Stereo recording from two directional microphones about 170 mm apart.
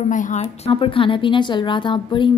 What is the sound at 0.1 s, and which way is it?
Speech, 45° left (ahead or behind).